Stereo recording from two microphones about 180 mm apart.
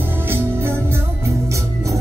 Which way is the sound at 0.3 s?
15° right (ahead or behind).